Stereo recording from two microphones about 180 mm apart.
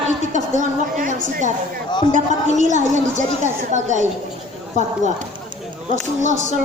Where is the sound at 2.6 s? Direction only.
45° right (ahead or behind).